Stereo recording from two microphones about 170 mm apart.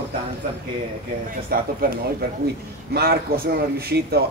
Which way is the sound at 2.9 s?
65° right (ahead or behind).